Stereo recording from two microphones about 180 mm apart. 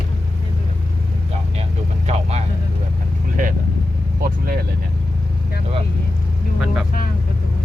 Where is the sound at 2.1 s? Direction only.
40° right (ahead or behind).